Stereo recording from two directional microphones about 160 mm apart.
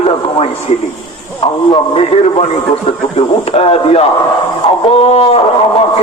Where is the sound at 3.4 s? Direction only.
40° left (ahead or behind).